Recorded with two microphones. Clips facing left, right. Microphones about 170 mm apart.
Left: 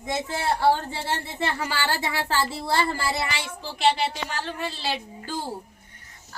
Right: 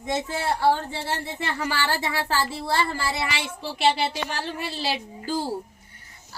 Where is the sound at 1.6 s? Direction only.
15° left (ahead or behind).